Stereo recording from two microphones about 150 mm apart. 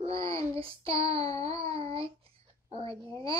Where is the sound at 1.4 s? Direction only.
40° right (ahead or behind).